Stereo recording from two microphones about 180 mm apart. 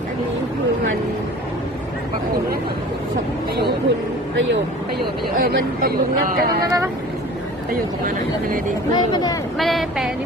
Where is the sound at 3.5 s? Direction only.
60° right (ahead or behind).